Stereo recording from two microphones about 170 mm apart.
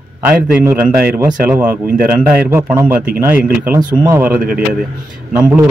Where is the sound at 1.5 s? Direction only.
10° right (ahead or behind).